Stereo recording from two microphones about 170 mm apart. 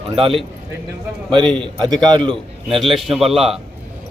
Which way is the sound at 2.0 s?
30° right (ahead or behind).